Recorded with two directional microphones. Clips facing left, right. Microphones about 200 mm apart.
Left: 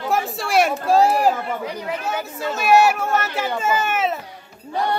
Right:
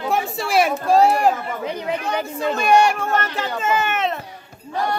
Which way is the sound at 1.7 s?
20° right (ahead or behind).